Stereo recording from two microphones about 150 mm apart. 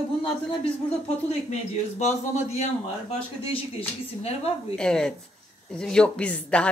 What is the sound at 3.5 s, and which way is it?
Speech, 40° left (ahead or behind).